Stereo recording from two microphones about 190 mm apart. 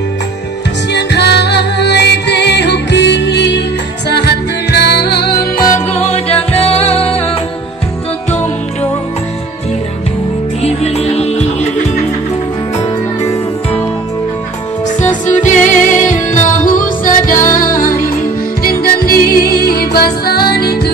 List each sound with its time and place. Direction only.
0.9 s music: 65° left (ahead or behind); by 7.3 s 30° left (ahead or behind)
10.6 s music: 35° left (ahead or behind)
15.2 s music: 40° left (ahead or behind); by 20.9 s 55° left (ahead or behind)